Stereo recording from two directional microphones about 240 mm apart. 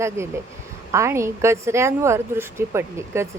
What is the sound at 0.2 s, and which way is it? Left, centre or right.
A woman's voice, centre.